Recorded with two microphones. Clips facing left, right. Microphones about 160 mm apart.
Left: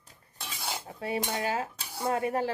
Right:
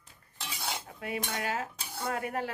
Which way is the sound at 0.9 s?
30° left (ahead or behind).